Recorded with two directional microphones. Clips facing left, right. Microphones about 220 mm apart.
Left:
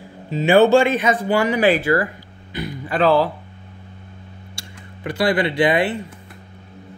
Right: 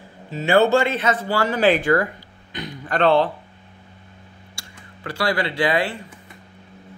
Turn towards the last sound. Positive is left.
turn(degrees=20)  # may be behind; listen again after turning